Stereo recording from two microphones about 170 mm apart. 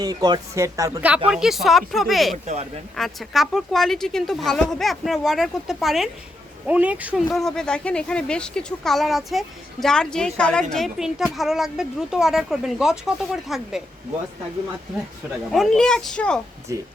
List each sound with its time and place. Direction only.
0.0 s speech: 25° right (ahead or behind)
1.3 s a woman's voice: centre (ahead or behind)
7.3 s a woman's voice: centre (ahead or behind)
15.5 s a woman's voice: centre (ahead or behind)
16.7 s speech: 20° right (ahead or behind)